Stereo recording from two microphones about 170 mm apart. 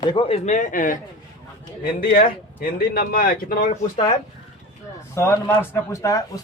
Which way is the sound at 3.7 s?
35° left (ahead or behind).